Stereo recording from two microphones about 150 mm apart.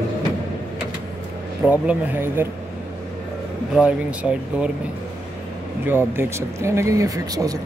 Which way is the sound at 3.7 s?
10° right (ahead or behind).